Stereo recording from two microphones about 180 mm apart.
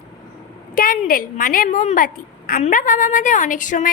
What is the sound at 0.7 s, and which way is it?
A woman's voice, 50° left (ahead or behind).